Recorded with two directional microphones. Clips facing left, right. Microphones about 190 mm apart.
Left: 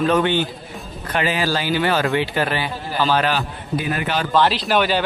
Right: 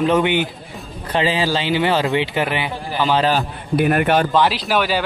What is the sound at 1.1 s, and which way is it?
Speech, 25° right (ahead or behind).